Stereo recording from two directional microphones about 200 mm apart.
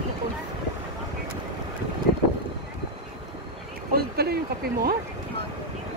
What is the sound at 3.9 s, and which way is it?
Speech, 50° right (ahead or behind).